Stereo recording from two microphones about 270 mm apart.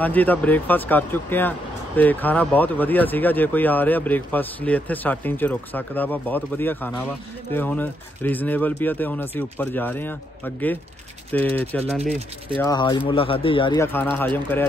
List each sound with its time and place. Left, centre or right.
0.0 s speech: centre
12.6 s speech: centre